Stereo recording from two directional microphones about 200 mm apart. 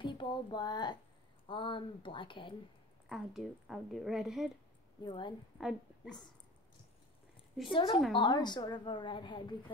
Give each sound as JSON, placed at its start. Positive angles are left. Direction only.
{"t": 0.0, "sound": "a woman's voice", "side_deg": 25}
{"t": 3.1, "sound": "a woman's voice", "side_deg": 0}
{"t": 5.0, "sound": "a woman's voice", "side_deg": 25}
{"t": 5.6, "sound": "a woman's voice", "side_deg": 0}
{"t": 7.7, "sound": "a woman's voice", "side_deg": 25}